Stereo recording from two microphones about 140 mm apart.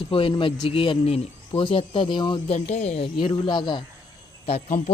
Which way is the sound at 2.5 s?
55° left (ahead or behind).